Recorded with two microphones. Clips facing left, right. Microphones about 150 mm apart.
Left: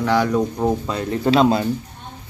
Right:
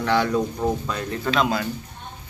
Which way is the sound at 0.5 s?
25° left (ahead or behind).